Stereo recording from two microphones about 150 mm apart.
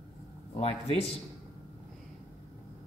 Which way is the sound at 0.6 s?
40° left (ahead or behind).